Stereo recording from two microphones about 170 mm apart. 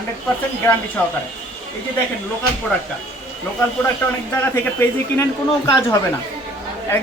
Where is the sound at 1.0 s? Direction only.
10° left (ahead or behind).